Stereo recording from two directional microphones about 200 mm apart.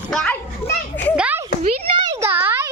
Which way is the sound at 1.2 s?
10° right (ahead or behind).